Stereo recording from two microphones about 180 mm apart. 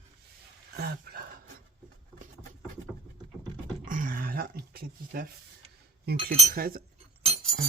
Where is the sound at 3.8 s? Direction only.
50° right (ahead or behind).